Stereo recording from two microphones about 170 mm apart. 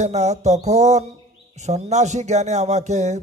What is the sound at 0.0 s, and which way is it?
Speech, 40° right (ahead or behind).